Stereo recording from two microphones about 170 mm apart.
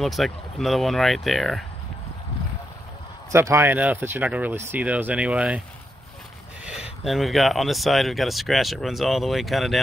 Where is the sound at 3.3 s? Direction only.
15° right (ahead or behind).